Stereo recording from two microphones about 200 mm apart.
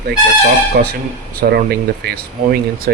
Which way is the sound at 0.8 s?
50° right (ahead or behind).